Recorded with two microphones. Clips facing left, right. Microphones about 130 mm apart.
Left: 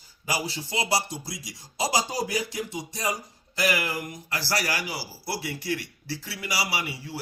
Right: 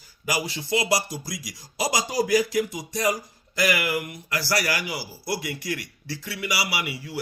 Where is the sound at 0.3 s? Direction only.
30° left (ahead or behind).